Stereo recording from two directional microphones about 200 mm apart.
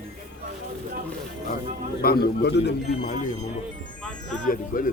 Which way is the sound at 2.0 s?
50° left (ahead or behind).